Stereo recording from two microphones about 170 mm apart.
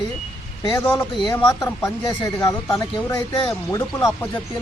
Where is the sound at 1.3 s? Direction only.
25° left (ahead or behind).